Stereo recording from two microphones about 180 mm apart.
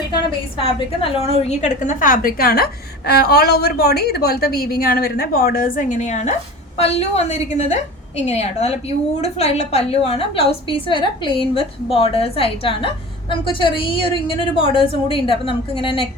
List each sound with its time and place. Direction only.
0.6 s a woman's voice: 30° left (ahead or behind)